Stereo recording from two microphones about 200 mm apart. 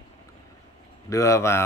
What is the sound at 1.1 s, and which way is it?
Speech, 15° left (ahead or behind).